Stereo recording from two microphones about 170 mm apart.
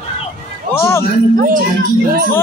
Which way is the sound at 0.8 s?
15° left (ahead or behind).